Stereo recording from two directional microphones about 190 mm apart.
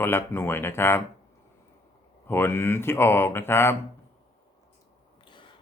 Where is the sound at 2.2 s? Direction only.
10° left (ahead or behind).